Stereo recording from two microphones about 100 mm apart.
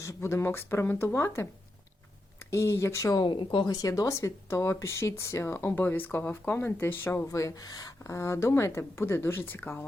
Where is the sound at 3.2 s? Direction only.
55° left (ahead or behind).